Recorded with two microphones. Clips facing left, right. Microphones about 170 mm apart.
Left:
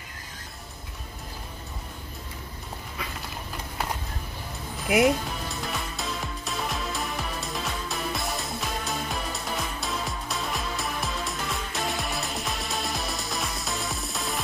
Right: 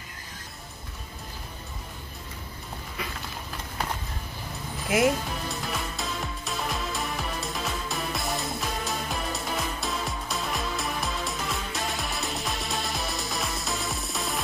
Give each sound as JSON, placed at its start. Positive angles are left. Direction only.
{"t": 5.0, "sound": "music", "side_deg": 0}